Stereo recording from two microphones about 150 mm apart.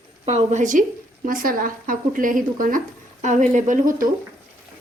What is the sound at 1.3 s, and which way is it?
Speech, 70° right (ahead or behind).